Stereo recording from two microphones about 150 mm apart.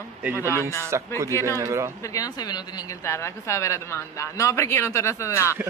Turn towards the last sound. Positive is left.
turn(degrees=20)  # may be behind; listen again after turning